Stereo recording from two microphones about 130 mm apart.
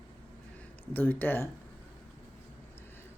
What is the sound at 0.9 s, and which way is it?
Speech, 15° left (ahead or behind).